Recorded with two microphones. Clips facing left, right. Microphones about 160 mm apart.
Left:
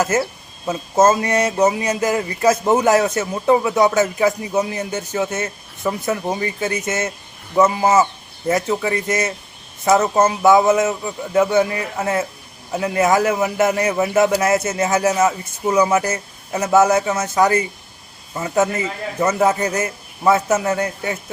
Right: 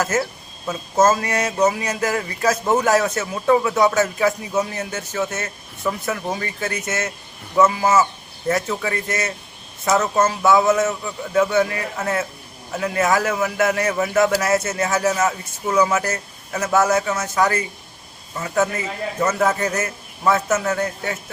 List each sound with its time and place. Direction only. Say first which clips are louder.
0.0 s a man's voice: left 3 dB; 20° left (ahead or behind)